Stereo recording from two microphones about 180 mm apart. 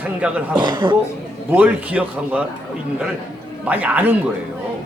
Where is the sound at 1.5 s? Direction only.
10° right (ahead or behind).